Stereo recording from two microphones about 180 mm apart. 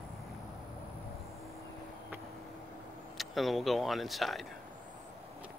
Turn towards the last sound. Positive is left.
turn(degrees=0)  # may be behind; listen again after turning